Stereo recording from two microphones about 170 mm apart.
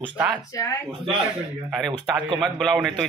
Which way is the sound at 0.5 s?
20° left (ahead or behind).